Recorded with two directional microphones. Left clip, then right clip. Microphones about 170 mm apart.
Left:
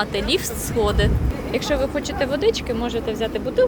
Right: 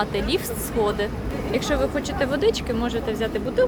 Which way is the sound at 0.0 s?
Centre (ahead or behind).